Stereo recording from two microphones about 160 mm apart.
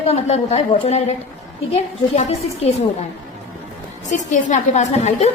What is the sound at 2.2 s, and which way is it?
Speech, 45° left (ahead or behind).